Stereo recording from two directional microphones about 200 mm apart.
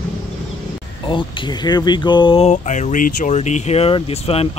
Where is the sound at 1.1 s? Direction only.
25° left (ahead or behind).